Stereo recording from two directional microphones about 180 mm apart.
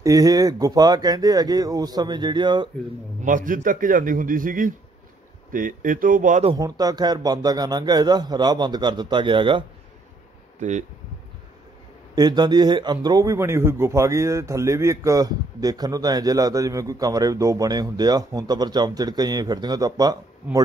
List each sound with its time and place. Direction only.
0.0 s a man's voice: 20° right (ahead or behind)
3.2 s a man's voice: 50° right (ahead or behind)
6.5 s a man's voice: 20° right (ahead or behind)
10.6 s speech: 40° right (ahead or behind)
12.2 s a man's voice: 20° right (ahead or behind)